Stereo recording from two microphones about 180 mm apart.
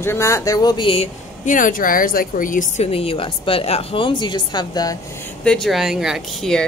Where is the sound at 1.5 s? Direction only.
45° left (ahead or behind).